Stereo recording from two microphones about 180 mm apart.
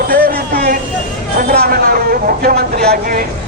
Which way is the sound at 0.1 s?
60° right (ahead or behind).